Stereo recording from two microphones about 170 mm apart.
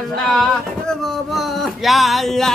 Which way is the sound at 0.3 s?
5° left (ahead or behind).